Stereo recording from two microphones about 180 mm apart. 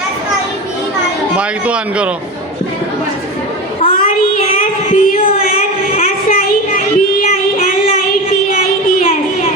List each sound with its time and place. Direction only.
1.4 s a man's voice: 5° right (ahead or behind)
3.8 s child singing: 30° left (ahead or behind)
4.5 s child singing: 45° left (ahead or behind)
6.2 s child singing: 55° left (ahead or behind)
8.4 s music: 55° left (ahead or behind)